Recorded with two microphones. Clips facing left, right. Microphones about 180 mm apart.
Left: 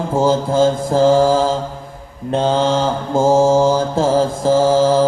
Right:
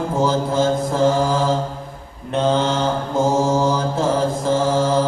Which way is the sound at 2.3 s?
30° left (ahead or behind).